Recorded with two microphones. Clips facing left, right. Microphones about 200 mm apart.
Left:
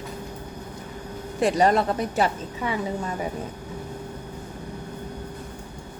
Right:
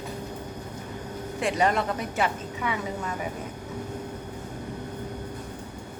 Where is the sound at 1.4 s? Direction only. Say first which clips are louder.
Left 5 dB; 35° left (ahead or behind).